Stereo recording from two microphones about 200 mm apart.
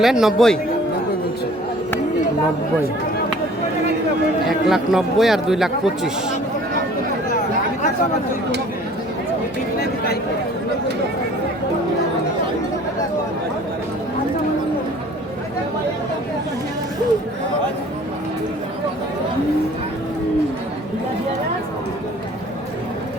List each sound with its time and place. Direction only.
0.0 s speech: centre (ahead or behind)
4.4 s speech: centre (ahead or behind)
9.7 s a sound: 50° left (ahead or behind)